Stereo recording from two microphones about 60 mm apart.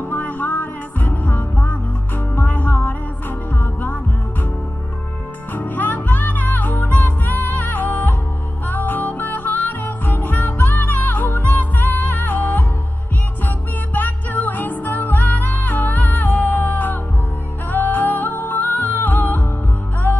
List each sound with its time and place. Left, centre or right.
0.1 s music: left
5.5 s music: left
13.9 s music: left